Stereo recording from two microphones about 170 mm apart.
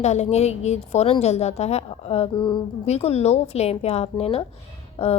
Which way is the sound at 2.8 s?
40° left (ahead or behind).